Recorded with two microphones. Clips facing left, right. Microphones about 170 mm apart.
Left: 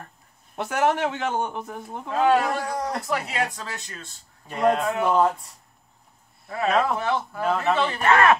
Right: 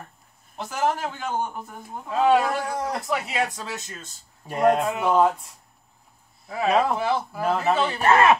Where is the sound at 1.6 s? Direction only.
Centre (ahead or behind).